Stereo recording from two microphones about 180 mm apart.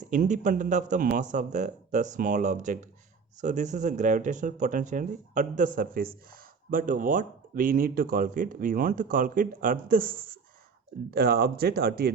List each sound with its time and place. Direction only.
0.1 s speech: 45° right (ahead or behind); by 12.1 s 60° right (ahead or behind)